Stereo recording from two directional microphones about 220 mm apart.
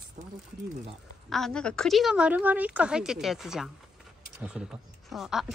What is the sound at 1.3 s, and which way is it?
A woman's voice, centre (ahead or behind).